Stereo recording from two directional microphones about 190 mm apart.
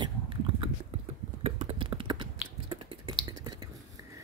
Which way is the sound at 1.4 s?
30° right (ahead or behind).